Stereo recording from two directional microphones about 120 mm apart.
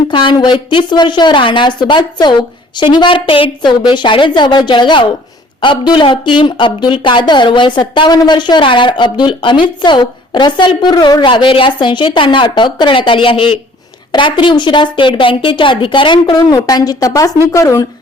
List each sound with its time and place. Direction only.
0.1 s a woman's voice: 45° left (ahead or behind); by 17.8 s 25° left (ahead or behind)